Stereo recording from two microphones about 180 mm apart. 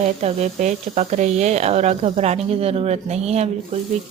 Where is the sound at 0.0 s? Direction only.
35° right (ahead or behind).